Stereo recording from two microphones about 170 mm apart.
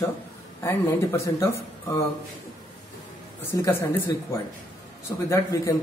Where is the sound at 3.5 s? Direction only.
15° left (ahead or behind).